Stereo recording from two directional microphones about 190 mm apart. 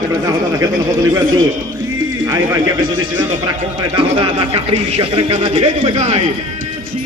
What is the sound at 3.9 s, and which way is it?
A man's voice, 25° right (ahead or behind).